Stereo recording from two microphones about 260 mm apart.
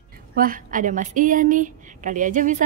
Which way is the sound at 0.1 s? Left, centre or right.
Right.